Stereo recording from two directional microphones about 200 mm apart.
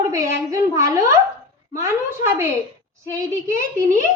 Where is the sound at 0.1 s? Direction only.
15° right (ahead or behind).